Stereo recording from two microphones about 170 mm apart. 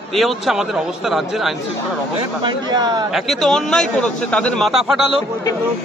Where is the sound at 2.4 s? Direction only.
25° right (ahead or behind).